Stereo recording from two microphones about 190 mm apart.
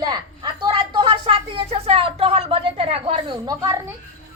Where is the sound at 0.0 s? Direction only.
20° right (ahead or behind).